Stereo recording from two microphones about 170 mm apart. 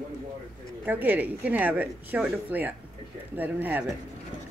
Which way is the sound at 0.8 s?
10° right (ahead or behind).